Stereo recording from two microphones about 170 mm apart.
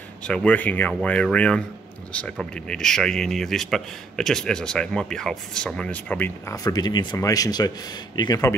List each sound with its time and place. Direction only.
0.2 s a man's voice: 5° left (ahead or behind); by 8.5 s 20° left (ahead or behind)